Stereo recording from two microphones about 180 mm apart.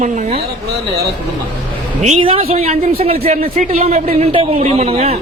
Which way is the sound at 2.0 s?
35° right (ahead or behind).